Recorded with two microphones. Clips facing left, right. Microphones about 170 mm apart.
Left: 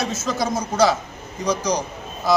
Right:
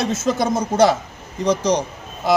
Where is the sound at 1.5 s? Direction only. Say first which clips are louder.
Right 4 dB; 25° right (ahead or behind).